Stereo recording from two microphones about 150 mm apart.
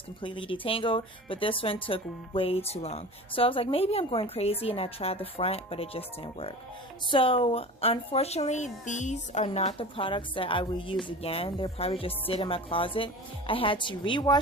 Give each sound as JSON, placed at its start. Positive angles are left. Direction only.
{"t": 0.2, "sound": "speech", "side_deg": 35}
{"t": 9.5, "sound": "speech", "side_deg": 40}